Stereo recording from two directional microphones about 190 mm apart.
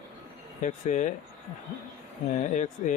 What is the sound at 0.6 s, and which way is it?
Speech, 40° left (ahead or behind).